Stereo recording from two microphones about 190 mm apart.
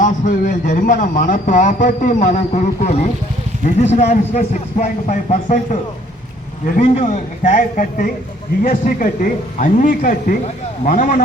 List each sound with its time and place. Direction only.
0.0 s a man's voice: 45° left (ahead or behind)
6.7 s a man's voice: 40° left (ahead or behind)